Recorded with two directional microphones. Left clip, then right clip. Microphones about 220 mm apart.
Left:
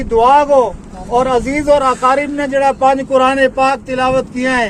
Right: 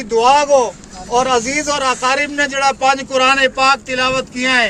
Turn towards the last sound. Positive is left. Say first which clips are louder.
# even
turn(degrees=0)  # may be behind; listen again after turning